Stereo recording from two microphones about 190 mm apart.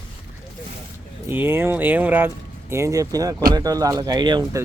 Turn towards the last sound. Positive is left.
turn(degrees=-20)  # may be behind; listen again after turning